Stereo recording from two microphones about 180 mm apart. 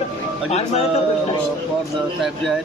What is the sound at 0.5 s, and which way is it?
Speech, 35° left (ahead or behind).